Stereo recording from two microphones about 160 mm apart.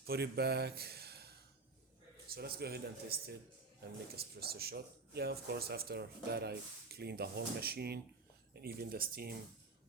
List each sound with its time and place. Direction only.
0.0 s speech: 80° right
8.6 s speech: 65° right (ahead or behind)